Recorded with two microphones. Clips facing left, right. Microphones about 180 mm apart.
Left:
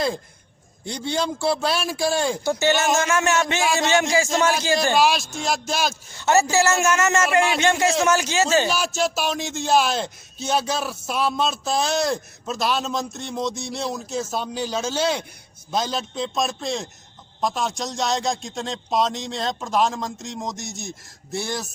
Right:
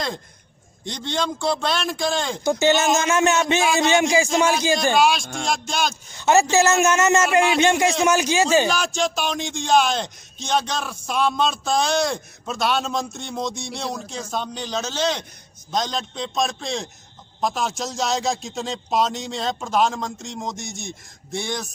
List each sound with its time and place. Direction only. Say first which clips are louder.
0.9 s speech: left 1 dB; 10° left (ahead or behind)
2.4 s a man's voice: right 2 dB; 15° right (ahead or behind)
4.9 s speech: right 1 dB; centre (ahead or behind)
6.1 s a man's voice: right 2 dB; 15° right (ahead or behind)
8.7 s speech: even; 5° left (ahead or behind)